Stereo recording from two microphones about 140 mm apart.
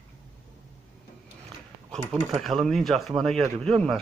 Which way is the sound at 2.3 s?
Centre (ahead or behind).